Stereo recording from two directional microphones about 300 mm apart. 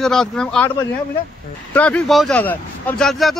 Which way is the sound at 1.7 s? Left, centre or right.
Centre.